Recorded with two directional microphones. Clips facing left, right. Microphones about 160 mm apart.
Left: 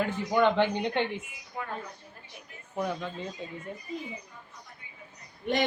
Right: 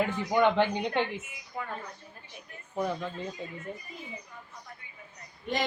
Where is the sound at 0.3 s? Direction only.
10° right (ahead or behind).